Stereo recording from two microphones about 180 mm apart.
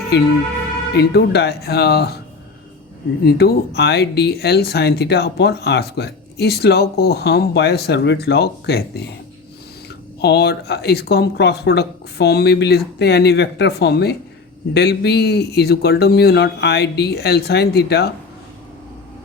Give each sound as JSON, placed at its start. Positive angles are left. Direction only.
{"t": 0.9, "sound": "speech", "side_deg": 65}
{"t": 3.2, "sound": "speech", "side_deg": 65}
{"t": 10.2, "sound": "speech", "side_deg": 65}